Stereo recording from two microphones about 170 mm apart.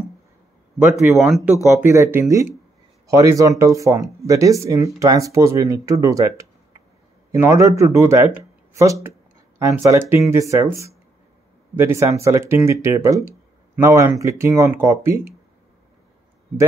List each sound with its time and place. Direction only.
0.9 s speech: centre (ahead or behind)
1.7 s speech: 15° right (ahead or behind)